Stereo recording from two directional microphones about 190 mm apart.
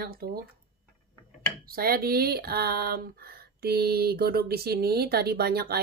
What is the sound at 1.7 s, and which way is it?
A woman's voice, 50° right (ahead or behind).